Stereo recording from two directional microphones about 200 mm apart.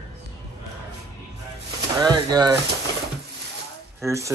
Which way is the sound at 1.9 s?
20° right (ahead or behind).